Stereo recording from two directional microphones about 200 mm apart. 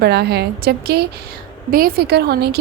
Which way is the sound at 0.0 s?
55° right (ahead or behind).